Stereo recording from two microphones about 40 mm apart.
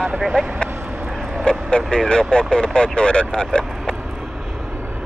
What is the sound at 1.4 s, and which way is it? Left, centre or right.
Speech, left.